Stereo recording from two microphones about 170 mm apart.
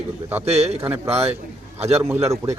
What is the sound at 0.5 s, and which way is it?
Speech, 40° right (ahead or behind).